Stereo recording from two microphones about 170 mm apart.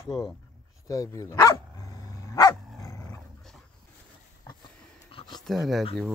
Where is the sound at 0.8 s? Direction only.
20° left (ahead or behind).